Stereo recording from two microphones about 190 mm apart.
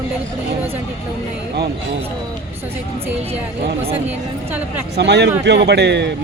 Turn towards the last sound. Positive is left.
turn(degrees=-65)  # may be behind; listen again after turning